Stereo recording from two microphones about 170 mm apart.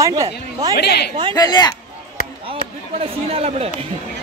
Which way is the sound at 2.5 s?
35° right (ahead or behind).